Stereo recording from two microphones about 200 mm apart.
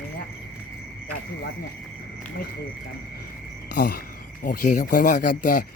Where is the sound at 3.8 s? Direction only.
45° left (ahead or behind).